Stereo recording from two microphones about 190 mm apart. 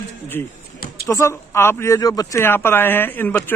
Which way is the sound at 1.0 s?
15° left (ahead or behind).